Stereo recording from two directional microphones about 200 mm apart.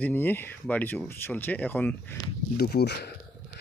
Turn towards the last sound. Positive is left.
turn(degrees=55)  # may be behind; listen again after turning